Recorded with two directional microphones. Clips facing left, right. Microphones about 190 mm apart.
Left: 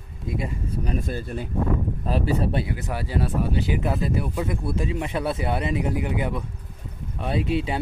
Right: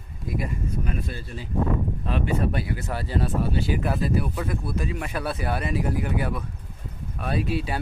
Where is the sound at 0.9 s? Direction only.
45° left (ahead or behind).